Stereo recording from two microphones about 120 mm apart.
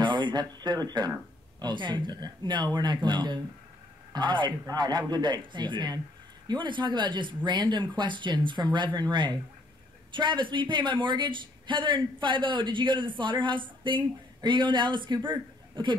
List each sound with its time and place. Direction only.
0.0 s a man's voice: 40° right (ahead or behind)